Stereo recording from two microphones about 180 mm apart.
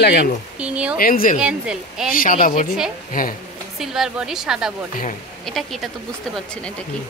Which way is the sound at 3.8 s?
5° right (ahead or behind).